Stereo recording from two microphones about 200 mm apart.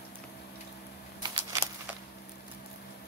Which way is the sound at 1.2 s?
20° right (ahead or behind).